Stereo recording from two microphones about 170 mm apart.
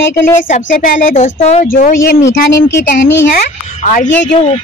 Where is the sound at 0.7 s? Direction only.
50° left (ahead or behind).